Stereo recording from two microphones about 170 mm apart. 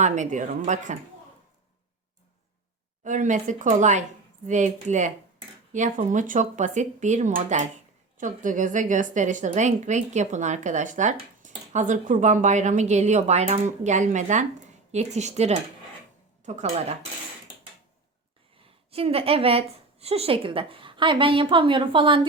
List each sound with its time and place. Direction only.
0.0 s a woman's voice: 45° right (ahead or behind)
3.0 s a woman's voice: 45° right (ahead or behind)
18.6 s a woman's voice: 35° right (ahead or behind)